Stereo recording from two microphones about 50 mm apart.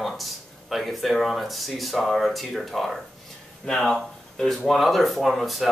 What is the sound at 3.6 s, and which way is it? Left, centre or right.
Speech, centre.